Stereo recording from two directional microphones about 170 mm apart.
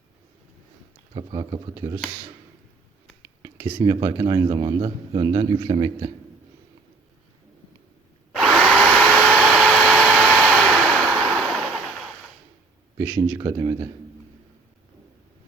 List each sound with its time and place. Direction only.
1.1 s speech: 30° right (ahead or behind)
3.8 s speech: 25° right (ahead or behind)
8.4 s a sound: 5° left (ahead or behind)
13.3 s speech: 20° right (ahead or behind)